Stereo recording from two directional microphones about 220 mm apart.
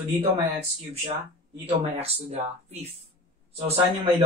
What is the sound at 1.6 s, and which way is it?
Speech, 25° right (ahead or behind).